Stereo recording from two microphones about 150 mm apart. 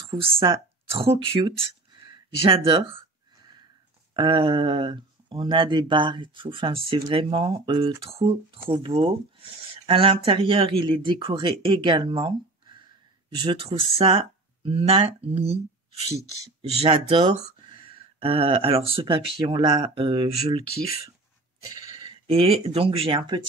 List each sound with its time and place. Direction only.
0.1 s speech: 35° right (ahead or behind)
4.1 s speech: 30° right (ahead or behind)
13.4 s speech: 35° right (ahead or behind)